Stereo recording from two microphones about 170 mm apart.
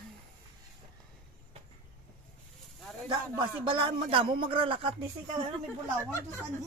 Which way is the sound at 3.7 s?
30° right (ahead or behind).